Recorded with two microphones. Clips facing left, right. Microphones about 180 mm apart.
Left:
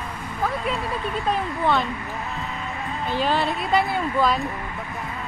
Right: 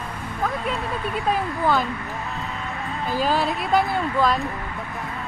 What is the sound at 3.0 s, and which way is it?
Speech, centre (ahead or behind).